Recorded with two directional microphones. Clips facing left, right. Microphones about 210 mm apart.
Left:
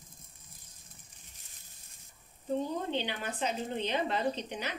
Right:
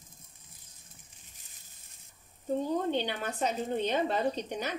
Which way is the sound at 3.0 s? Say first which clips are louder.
Right 3 dB; 45° right (ahead or behind).